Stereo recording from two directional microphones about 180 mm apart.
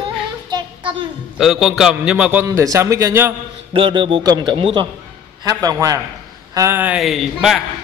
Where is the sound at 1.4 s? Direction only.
Centre (ahead or behind).